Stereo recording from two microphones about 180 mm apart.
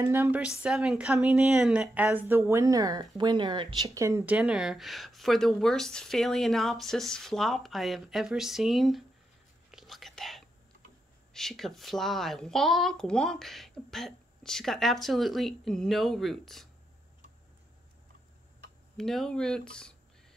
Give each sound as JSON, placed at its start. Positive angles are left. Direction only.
{"t": 0.0, "sound": "a woman's voice", "side_deg": -10}
{"t": 4.4, "sound": "speech", "side_deg": -5}
{"t": 9.7, "sound": "whispering", "side_deg": 0}
{"t": 11.3, "sound": "speech", "side_deg": 0}
{"t": 18.9, "sound": "speech", "side_deg": 5}